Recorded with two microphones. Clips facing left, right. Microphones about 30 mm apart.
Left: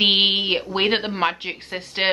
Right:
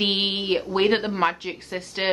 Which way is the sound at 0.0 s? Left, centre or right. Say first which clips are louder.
Left 6 dB; left.